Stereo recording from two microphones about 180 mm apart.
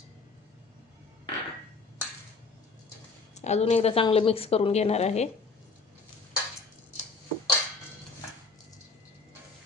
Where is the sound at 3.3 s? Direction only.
40° left (ahead or behind).